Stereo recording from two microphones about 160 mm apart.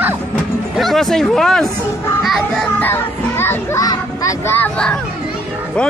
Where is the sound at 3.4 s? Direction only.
20° left (ahead or behind).